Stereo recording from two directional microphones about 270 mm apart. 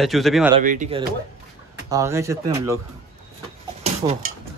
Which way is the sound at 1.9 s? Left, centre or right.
Centre.